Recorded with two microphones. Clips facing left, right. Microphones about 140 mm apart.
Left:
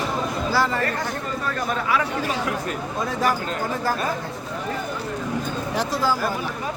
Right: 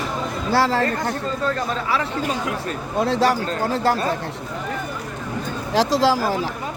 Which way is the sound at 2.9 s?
75° right (ahead or behind).